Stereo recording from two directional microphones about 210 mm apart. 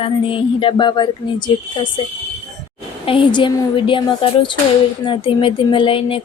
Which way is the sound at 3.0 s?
25° left (ahead or behind).